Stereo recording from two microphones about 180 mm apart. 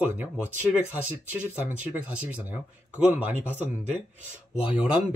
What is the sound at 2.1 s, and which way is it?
Speech, 10° right (ahead or behind).